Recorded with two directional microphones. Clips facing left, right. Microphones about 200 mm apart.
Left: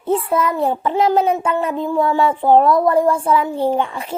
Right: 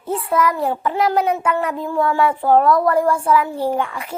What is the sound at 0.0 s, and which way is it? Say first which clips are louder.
A child's voice: left 2 dB; 25° left (ahead or behind).